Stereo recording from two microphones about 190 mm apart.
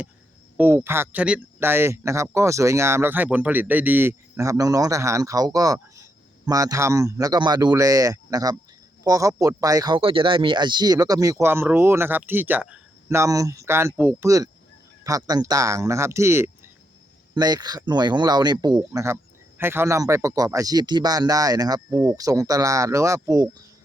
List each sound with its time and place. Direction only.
0.5 s speech: 10° right (ahead or behind)